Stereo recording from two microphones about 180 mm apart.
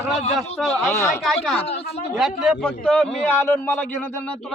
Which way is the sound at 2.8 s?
5° left (ahead or behind).